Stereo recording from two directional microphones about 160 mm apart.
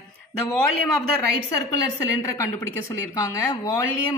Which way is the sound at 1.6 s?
20° left (ahead or behind).